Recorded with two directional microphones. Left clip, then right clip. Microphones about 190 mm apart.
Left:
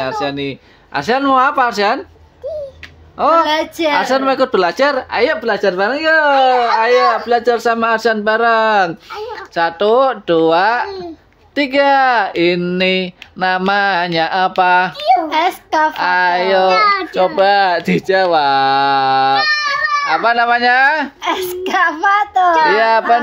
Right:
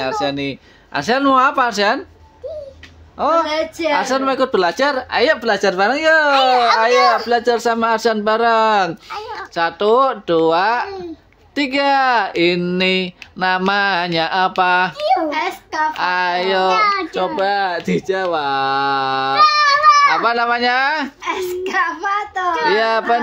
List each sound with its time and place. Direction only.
0.0 s speech: centre (ahead or behind)
3.2 s a woman's voice: 10° left (ahead or behind)
3.4 s a child's voice: 45° left (ahead or behind)
3.9 s a woman's voice: 5° left (ahead or behind)
15.2 s a child's voice: 45° left (ahead or behind)
15.9 s a woman's voice: 5° left (ahead or behind)
21.2 s a child's voice: 40° left (ahead or behind)
22.7 s speech: centre (ahead or behind)